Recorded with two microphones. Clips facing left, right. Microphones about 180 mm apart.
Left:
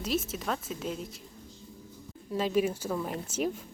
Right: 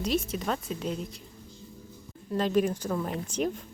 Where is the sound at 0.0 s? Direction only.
5° left (ahead or behind).